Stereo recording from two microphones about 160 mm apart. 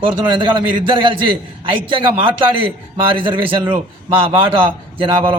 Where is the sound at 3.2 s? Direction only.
30° right (ahead or behind).